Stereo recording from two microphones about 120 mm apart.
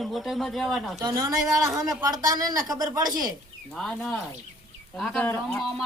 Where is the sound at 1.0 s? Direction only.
30° right (ahead or behind).